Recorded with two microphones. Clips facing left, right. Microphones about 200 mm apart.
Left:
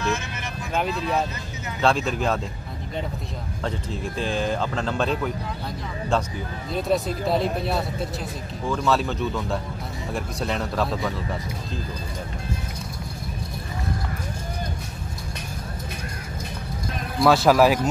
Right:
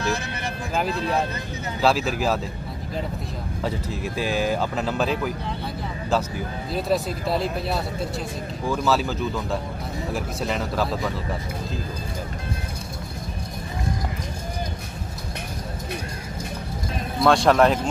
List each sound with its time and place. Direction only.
1.8 s speech: 5° right (ahead or behind)
3.6 s speech: 5° right (ahead or behind)
6.7 s speech: centre (ahead or behind)
17.2 s speech: 5° left (ahead or behind)